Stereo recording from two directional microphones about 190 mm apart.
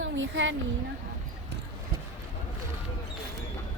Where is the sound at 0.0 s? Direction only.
75° right (ahead or behind).